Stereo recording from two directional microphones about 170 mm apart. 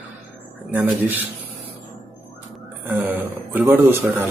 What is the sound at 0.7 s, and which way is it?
Speech, 10° right (ahead or behind).